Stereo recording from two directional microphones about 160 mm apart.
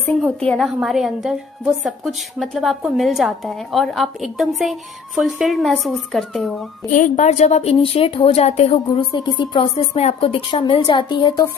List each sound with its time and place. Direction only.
0.0 s a woman's voice: centre (ahead or behind)
6.9 s a woman's voice: 55° left (ahead or behind)
9.2 s a woman's voice: 30° left (ahead or behind)